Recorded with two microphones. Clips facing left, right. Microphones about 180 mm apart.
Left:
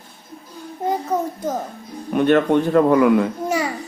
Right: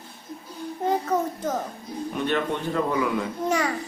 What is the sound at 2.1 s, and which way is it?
A man's voice, 60° left (ahead or behind).